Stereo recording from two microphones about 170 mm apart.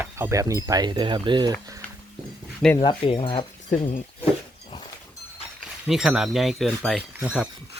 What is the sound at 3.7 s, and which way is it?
Speech, 50° left (ahead or behind).